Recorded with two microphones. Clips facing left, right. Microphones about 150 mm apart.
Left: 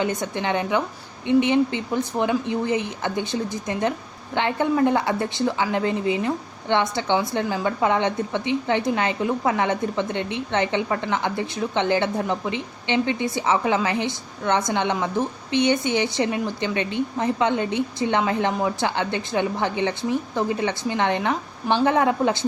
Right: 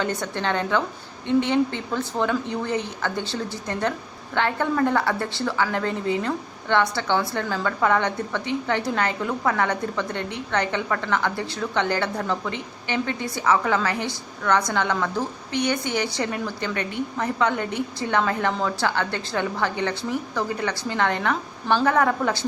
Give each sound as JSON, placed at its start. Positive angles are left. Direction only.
{"t": 0.0, "sound": "a woman's voice", "side_deg": 20}